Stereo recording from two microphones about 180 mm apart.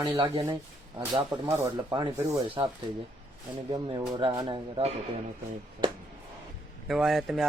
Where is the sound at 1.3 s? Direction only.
20° right (ahead or behind).